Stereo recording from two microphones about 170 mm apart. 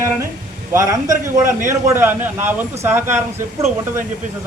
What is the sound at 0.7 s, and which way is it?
A man's voice, 20° right (ahead or behind).